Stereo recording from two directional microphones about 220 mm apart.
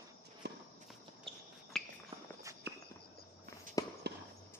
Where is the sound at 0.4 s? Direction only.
50° right (ahead or behind).